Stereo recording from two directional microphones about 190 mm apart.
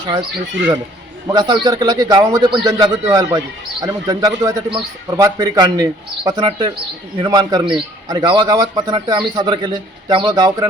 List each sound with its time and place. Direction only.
0.0 s speech: 20° right (ahead or behind)
1.3 s speech: 20° right (ahead or behind)